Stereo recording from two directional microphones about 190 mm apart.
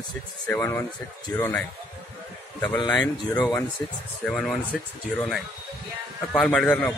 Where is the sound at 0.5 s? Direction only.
10° left (ahead or behind).